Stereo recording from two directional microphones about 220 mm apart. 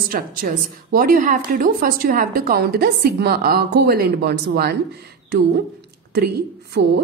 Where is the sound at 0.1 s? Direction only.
40° right (ahead or behind).